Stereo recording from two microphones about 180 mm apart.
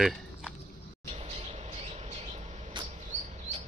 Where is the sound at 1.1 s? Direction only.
35° right (ahead or behind).